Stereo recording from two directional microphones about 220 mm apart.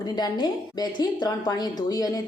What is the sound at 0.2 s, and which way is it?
A woman's voice, 20° left (ahead or behind).